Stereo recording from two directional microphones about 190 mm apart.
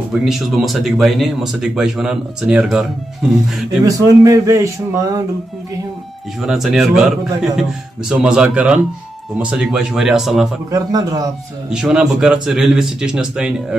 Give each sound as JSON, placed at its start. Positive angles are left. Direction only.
{"t": 0.1, "sound": "speech", "side_deg": 0}
{"t": 3.8, "sound": "a man's voice", "side_deg": -20}
{"t": 6.4, "sound": "speech", "side_deg": 0}
{"t": 10.7, "sound": "a man's voice", "side_deg": -20}
{"t": 11.7, "sound": "speech", "side_deg": -5}